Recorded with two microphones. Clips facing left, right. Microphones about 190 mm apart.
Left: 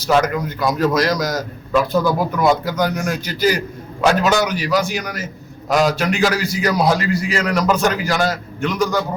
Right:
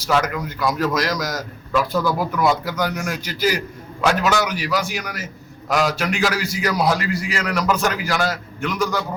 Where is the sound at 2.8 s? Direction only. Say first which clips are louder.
Left 3 dB; 35° left (ahead or behind).